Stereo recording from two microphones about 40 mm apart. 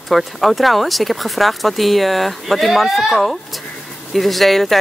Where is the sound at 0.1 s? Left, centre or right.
Centre.